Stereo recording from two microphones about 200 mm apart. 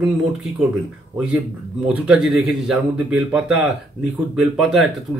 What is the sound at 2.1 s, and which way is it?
Speech, centre (ahead or behind).